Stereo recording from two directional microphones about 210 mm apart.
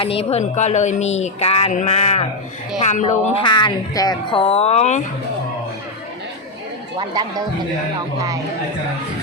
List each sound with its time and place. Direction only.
0.0 s speech: 25° left (ahead or behind)
7.1 s speech: 20° right (ahead or behind)